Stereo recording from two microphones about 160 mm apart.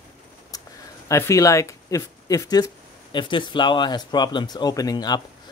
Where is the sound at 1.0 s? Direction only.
20° left (ahead or behind).